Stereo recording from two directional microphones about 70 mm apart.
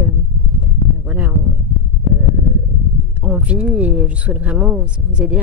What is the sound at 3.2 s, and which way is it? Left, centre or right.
Speech, centre.